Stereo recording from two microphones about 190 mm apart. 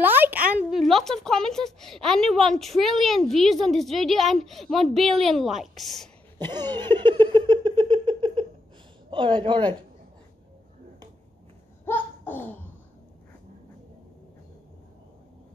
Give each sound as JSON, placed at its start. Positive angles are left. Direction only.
{"t": 0.0, "sound": "a woman's voice", "side_deg": -10}
{"t": 6.3, "sound": "a sound", "side_deg": -20}
{"t": 6.8, "sound": "giggle", "side_deg": -25}
{"t": 9.1, "sound": "a woman's voice", "side_deg": -25}
{"t": 11.8, "sound": "laughter", "side_deg": 10}